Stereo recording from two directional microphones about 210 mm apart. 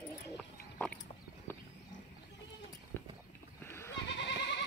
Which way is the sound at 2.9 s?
10° left (ahead or behind).